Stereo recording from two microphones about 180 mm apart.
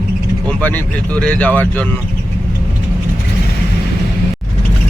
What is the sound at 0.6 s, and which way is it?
Speech, 10° left (ahead or behind).